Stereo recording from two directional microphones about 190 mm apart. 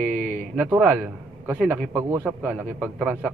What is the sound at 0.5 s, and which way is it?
A man's voice, 5° right (ahead or behind).